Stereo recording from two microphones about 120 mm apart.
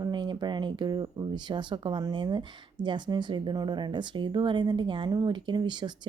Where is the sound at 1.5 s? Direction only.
40° right (ahead or behind).